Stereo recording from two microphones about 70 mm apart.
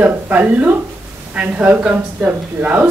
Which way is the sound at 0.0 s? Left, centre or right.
Right.